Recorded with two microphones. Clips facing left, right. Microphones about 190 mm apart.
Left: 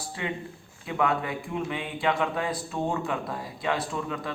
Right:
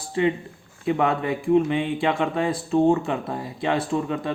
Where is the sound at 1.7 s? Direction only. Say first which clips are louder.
Right 5 dB; 25° right (ahead or behind).